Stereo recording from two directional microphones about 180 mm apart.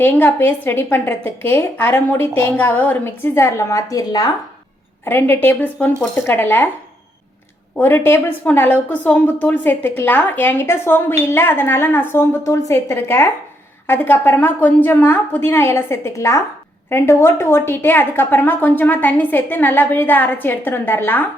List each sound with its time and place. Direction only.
0.0 s a woman's voice: 10° left (ahead or behind)
7.8 s a woman's voice: 10° left (ahead or behind)